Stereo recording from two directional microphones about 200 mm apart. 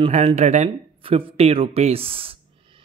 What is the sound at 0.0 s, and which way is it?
Speech, 30° right (ahead or behind).